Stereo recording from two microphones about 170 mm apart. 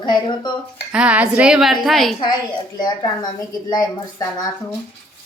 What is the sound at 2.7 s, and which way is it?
A woman's voice, 25° left (ahead or behind).